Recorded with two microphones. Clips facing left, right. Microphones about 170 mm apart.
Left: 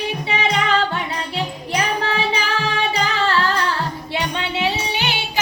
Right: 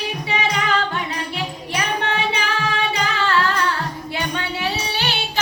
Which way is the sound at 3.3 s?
35° left (ahead or behind).